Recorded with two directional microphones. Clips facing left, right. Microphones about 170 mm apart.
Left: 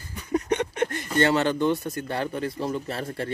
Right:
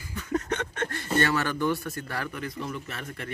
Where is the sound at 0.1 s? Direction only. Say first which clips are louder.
Left 4 dB; 15° left (ahead or behind).